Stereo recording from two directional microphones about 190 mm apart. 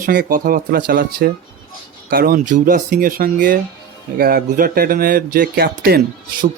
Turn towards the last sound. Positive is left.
turn(degrees=-55)  # may be behind; listen again after turning